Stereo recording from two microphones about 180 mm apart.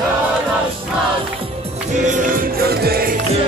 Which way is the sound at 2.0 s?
45° right (ahead or behind).